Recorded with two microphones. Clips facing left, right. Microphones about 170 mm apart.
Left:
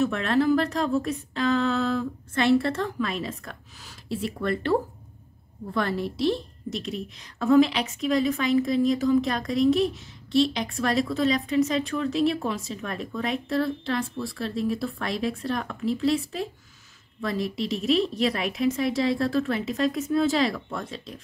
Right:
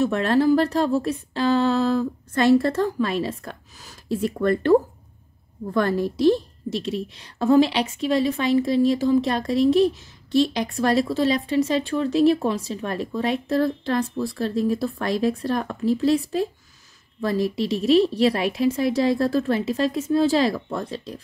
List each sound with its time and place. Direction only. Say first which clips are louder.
0.0 s a woman's voice: right 4 dB; 35° right (ahead or behind)
6.8 s speech: right 5 dB; 30° right (ahead or behind)